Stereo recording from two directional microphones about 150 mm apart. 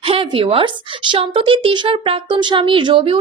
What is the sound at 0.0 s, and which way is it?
A woman's voice, 35° right (ahead or behind).